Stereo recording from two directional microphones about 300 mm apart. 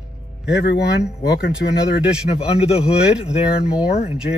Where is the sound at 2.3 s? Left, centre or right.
Centre.